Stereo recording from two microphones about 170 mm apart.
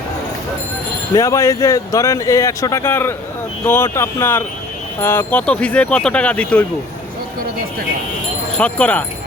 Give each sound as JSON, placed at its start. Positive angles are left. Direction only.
{"t": 1.1, "sound": "speech", "side_deg": 20}
{"t": 8.5, "sound": "speech", "side_deg": 5}